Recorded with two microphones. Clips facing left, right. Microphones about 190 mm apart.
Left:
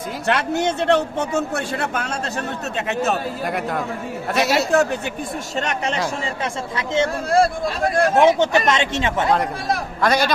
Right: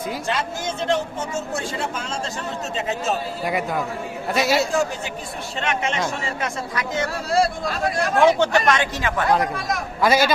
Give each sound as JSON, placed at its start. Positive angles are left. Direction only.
{"t": 0.3, "sound": "a man's voice", "side_deg": 65}
{"t": 3.4, "sound": "a man's voice", "side_deg": 0}
{"t": 4.7, "sound": "a man's voice", "side_deg": 60}
{"t": 5.5, "sound": "speech", "side_deg": 40}
{"t": 6.4, "sound": "speech", "side_deg": 25}
{"t": 7.3, "sound": "speech", "side_deg": 50}
{"t": 8.1, "sound": "speech", "side_deg": 20}
{"t": 10.0, "sound": "a man's voice", "side_deg": -5}